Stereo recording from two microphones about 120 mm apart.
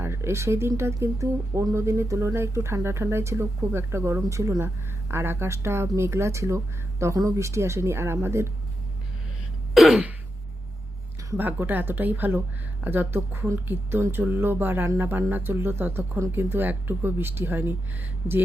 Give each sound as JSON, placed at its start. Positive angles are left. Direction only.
{"t": 0.0, "sound": "speech", "side_deg": -20}
{"t": 9.7, "sound": "throat clearing", "side_deg": -5}
{"t": 11.3, "sound": "speech", "side_deg": -15}